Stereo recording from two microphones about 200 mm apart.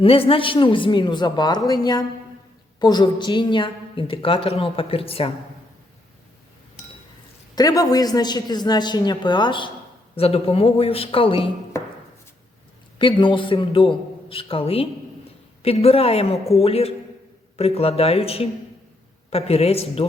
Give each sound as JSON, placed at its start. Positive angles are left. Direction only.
{"t": 0.0, "sound": "a woman's voice", "side_deg": 30}
{"t": 7.5, "sound": "a woman's voice", "side_deg": 15}
{"t": 13.0, "sound": "a woman's voice", "side_deg": 25}